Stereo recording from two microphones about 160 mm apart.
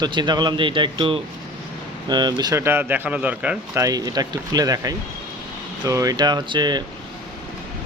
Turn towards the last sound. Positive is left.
turn(degrees=-25)  # may be behind; listen again after turning